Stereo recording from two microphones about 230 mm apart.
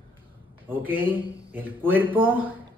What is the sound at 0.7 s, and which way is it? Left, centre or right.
Speech, centre.